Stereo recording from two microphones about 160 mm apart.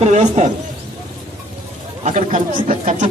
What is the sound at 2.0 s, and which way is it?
Speech, 50° right (ahead or behind).